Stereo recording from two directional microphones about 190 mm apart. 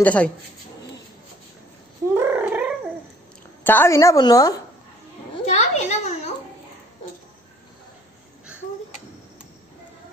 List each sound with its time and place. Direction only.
0.0 s a woman's voice: 5° left (ahead or behind)
2.1 s cat: 10° right (ahead or behind)
3.6 s a woman's voice: 10° left (ahead or behind)
5.4 s a child's voice: 35° left (ahead or behind)